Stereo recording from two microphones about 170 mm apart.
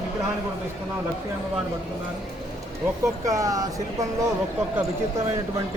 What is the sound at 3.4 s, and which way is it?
Speech, 20° right (ahead or behind).